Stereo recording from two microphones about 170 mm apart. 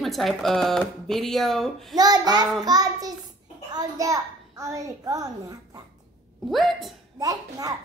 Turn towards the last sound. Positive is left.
turn(degrees=-20)  # may be behind; listen again after turning